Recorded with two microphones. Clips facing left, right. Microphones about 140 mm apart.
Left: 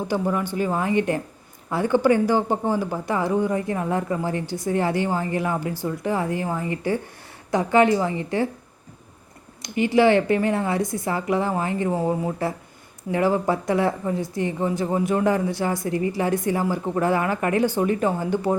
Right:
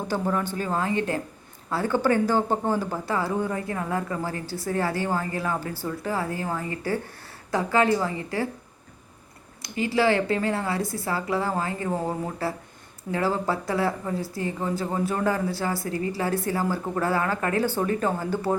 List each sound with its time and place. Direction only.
0.1 s speech: 10° left (ahead or behind)
9.6 s speech: 20° left (ahead or behind)